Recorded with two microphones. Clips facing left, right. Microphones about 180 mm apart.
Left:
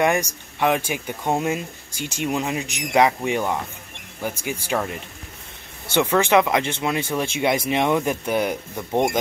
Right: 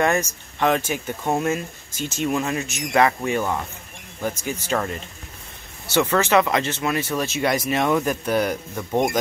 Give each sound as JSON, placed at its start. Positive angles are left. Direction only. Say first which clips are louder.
{"t": 0.0, "sound": "speech", "louder": "left 1 dB", "side_deg": 15}